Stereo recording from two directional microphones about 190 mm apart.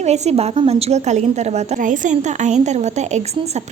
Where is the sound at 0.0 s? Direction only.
35° right (ahead or behind).